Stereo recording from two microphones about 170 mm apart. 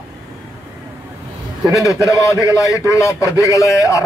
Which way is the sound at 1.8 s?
20° left (ahead or behind).